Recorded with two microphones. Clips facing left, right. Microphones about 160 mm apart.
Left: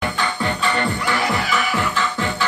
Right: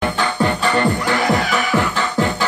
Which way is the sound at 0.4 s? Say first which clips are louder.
Right 6 dB; 40° right (ahead or behind).